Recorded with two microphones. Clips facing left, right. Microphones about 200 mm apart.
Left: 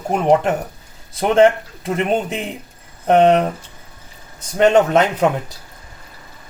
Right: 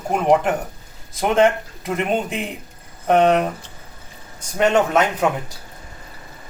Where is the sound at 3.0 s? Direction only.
30° left (ahead or behind).